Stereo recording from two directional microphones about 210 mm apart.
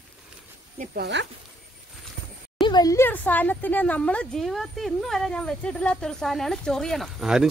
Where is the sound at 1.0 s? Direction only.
55° right (ahead or behind).